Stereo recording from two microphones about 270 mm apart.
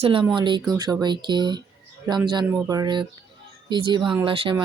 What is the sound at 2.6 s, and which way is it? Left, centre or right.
Speech, centre.